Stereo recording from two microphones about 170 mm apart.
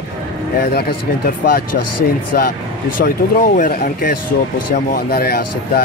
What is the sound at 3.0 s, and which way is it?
Speech, 60° left (ahead or behind).